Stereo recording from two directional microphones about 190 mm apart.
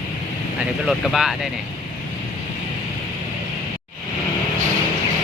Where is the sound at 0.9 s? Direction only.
Centre (ahead or behind).